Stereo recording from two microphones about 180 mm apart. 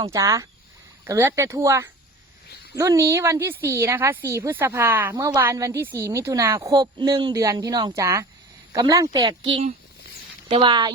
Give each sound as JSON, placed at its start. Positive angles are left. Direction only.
{"t": 0.0, "sound": "a woman's voice", "side_deg": -20}